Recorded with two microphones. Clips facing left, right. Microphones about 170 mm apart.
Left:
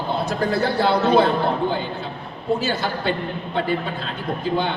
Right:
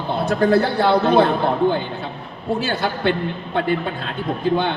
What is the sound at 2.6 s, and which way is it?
Speech, 55° right (ahead or behind).